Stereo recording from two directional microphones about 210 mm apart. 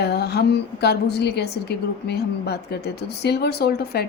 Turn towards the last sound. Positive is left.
turn(degrees=50)  # may be behind; listen again after turning